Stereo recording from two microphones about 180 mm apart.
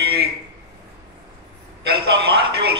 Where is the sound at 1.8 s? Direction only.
65° right (ahead or behind).